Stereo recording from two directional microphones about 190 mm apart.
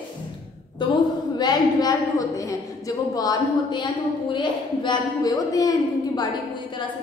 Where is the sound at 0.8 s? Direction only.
25° left (ahead or behind).